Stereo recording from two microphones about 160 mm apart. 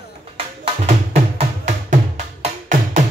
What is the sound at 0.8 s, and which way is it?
Music, 45° right (ahead or behind).